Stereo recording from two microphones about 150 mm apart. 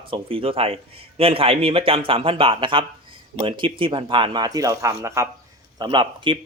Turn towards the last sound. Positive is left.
turn(degrees=-30)  # may be behind; listen again after turning